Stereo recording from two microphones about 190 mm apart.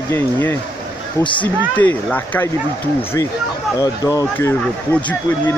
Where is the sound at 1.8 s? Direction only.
10° left (ahead or behind).